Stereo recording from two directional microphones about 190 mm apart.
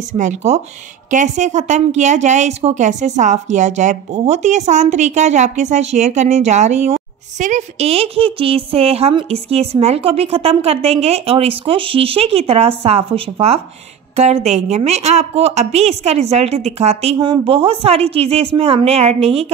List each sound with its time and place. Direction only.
0.2 s speech: 35° right (ahead or behind)